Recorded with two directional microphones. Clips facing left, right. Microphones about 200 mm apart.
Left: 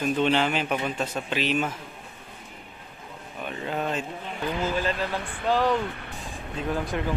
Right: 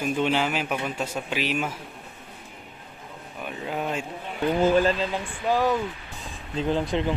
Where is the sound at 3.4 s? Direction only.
5° right (ahead or behind).